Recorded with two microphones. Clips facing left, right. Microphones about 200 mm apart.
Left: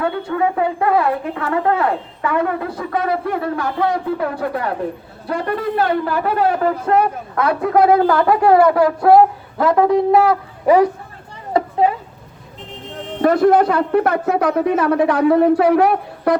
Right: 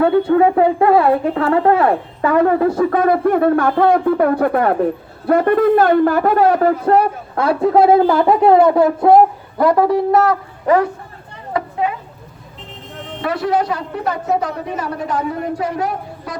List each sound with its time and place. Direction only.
0.0 s a woman's voice: 35° right (ahead or behind); by 10.3 s centre (ahead or behind)
11.5 s a sound: 30° left (ahead or behind)
13.2 s a woman's voice: 50° left (ahead or behind)